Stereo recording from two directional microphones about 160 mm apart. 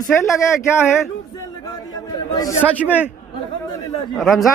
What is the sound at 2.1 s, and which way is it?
Speech, 25° left (ahead or behind).